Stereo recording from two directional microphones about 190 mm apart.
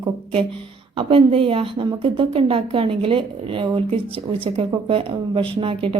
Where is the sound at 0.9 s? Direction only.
30° right (ahead or behind).